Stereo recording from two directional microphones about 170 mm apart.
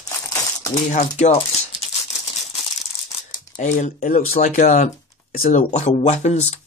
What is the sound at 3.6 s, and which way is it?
Speech, 45° left (ahead or behind).